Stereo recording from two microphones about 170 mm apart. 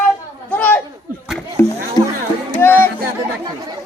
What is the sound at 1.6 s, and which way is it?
Music, 15° left (ahead or behind).